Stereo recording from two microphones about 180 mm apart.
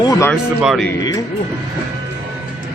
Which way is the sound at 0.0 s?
20° left (ahead or behind).